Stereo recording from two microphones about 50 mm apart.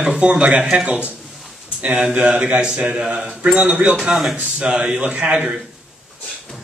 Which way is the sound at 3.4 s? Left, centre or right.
Right.